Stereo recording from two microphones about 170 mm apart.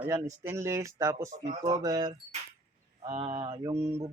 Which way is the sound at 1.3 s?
45° right (ahead or behind).